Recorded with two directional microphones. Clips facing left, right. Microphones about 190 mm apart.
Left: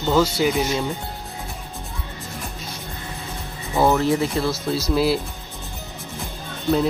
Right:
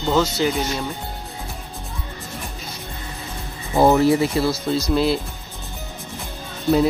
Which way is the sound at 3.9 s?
10° right (ahead or behind).